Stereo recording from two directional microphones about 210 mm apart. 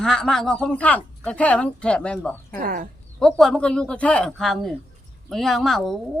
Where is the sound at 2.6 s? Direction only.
40° right (ahead or behind).